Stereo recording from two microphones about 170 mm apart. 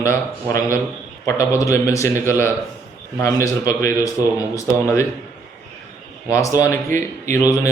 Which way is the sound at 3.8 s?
20° left (ahead or behind).